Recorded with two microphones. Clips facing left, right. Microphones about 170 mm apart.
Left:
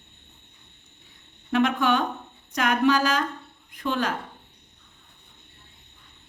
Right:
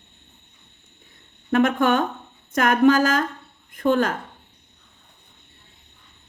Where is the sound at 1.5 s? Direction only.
50° right (ahead or behind).